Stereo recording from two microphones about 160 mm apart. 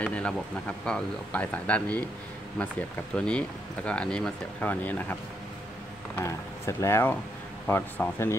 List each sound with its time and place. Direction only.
0.0 s speech: 5° left (ahead or behind)
3.2 s speech: 5° left (ahead or behind)
6.1 s speech: 15° left (ahead or behind)